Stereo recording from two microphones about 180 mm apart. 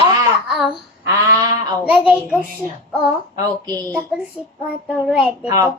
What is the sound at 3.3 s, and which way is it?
Speech, 20° right (ahead or behind).